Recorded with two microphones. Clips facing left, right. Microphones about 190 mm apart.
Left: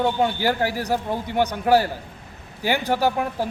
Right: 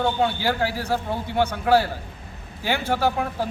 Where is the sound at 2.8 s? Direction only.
15° left (ahead or behind).